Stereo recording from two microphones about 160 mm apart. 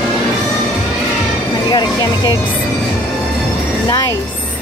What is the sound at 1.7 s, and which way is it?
Music, 25° left (ahead or behind).